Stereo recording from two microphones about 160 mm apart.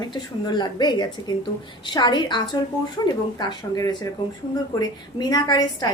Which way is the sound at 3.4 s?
25° left (ahead or behind).